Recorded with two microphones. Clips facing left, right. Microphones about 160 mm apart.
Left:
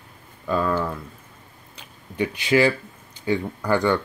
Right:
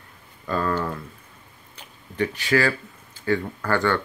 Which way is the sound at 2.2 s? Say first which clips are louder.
Left 3 dB; 15° left (ahead or behind).